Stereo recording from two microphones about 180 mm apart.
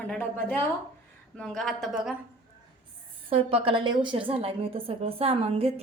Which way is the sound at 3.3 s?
30° right (ahead or behind).